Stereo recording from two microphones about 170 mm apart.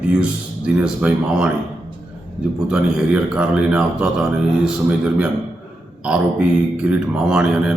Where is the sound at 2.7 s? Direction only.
5° right (ahead or behind).